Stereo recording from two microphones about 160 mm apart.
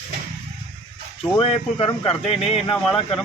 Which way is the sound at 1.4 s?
35° left (ahead or behind).